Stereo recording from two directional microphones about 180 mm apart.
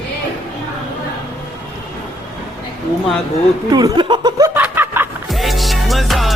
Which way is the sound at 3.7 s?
20° right (ahead or behind).